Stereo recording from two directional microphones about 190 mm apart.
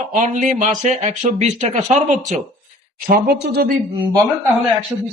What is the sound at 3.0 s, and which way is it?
Speech, 55° right (ahead or behind).